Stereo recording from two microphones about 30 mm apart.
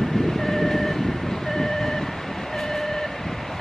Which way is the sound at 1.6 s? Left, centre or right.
Centre.